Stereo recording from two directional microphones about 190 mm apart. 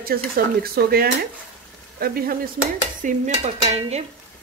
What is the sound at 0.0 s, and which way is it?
Speech, 55° right (ahead or behind).